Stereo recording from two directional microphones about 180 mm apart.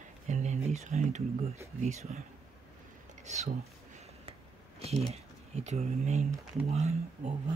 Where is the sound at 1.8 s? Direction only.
40° right (ahead or behind).